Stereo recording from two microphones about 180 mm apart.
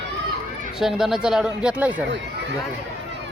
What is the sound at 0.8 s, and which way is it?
Speech, centre (ahead or behind).